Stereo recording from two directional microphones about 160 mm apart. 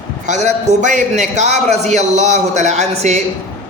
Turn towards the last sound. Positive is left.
turn(degrees=-45)  # may be behind; listen again after turning